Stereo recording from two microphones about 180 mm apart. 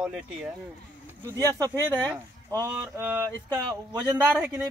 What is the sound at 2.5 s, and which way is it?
Speech, 20° right (ahead or behind).